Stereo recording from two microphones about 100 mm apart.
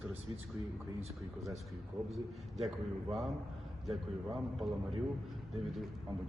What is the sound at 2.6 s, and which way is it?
Speech, centre (ahead or behind).